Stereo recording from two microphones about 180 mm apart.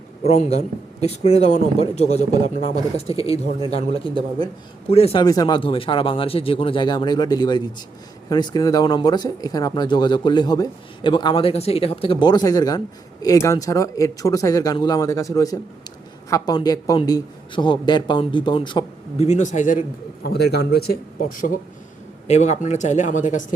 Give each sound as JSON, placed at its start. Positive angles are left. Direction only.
{"t": 0.2, "sound": "speech", "side_deg": 35}
{"t": 4.9, "sound": "speech", "side_deg": 35}
{"t": 5.2, "sound": "speech", "side_deg": 20}
{"t": 20.2, "sound": "speech", "side_deg": 65}